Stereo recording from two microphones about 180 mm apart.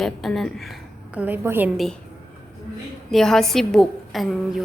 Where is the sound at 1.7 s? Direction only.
Centre (ahead or behind).